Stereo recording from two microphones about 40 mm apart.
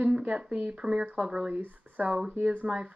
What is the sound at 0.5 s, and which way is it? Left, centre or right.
Speech, right.